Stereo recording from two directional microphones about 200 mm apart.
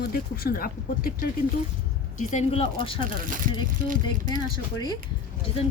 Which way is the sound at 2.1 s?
35° left (ahead or behind).